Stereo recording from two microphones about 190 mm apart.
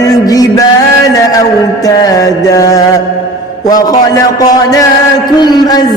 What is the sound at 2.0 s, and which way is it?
A man's voice, 20° left (ahead or behind).